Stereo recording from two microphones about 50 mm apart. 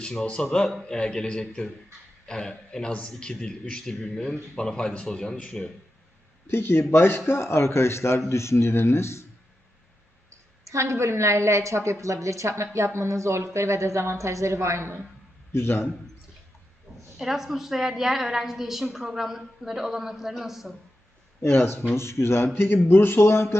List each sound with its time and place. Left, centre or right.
0.0 s a man's voice: centre
6.5 s speech: left
10.6 s speech: right
12.7 s speech: right
15.5 s speech: left
17.2 s a woman's voice: centre
21.4 s speech: left
21.9 s speech: left